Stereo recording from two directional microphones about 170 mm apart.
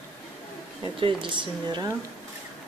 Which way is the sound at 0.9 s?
30° right (ahead or behind).